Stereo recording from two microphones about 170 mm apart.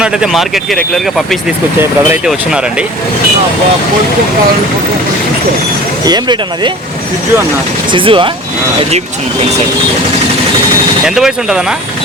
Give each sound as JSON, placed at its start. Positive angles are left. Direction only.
{"t": 0.0, "sound": "speech", "side_deg": -5}
{"t": 1.8, "sound": "speech", "side_deg": -10}
{"t": 6.1, "sound": "speech", "side_deg": -25}
{"t": 7.9, "sound": "speech", "side_deg": -30}
{"t": 11.0, "sound": "speech", "side_deg": -5}